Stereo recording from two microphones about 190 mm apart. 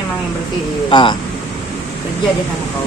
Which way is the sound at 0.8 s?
25° left (ahead or behind).